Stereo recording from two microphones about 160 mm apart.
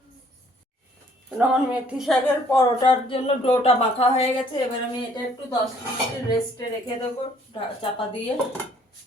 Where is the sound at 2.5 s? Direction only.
25° left (ahead or behind).